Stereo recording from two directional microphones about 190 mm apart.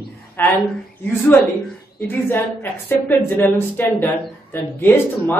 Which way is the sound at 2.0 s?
10° left (ahead or behind).